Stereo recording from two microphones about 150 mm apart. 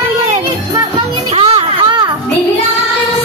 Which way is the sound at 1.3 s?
40° right (ahead or behind).